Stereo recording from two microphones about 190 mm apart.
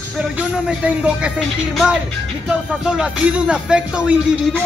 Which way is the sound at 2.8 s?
5° right (ahead or behind).